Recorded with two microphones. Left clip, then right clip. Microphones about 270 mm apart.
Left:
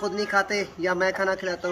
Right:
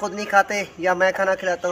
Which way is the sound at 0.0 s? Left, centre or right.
Centre.